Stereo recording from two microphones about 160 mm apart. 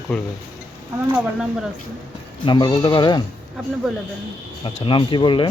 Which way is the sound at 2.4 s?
30° left (ahead or behind).